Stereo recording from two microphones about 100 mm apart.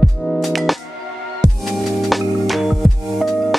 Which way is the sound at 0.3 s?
Centre (ahead or behind).